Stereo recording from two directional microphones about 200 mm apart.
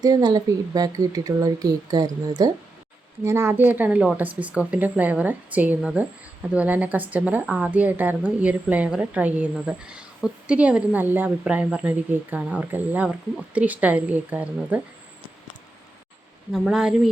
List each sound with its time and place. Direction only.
0.0 s a woman's voice: 20° right (ahead or behind)
16.5 s speech: 5° right (ahead or behind)